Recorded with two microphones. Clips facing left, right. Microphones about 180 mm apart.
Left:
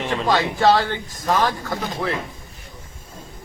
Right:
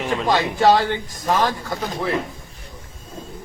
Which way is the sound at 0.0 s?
10° right (ahead or behind).